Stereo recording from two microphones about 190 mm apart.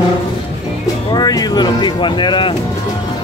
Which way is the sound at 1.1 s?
20° left (ahead or behind).